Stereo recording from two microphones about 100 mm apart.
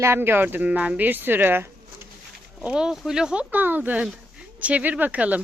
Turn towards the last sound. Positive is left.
turn(degrees=-15)  # may be behind; listen again after turning